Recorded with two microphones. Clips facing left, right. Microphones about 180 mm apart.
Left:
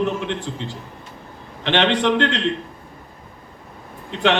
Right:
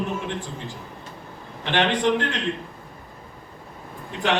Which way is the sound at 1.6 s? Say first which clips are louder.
Left 3 dB; 85° left.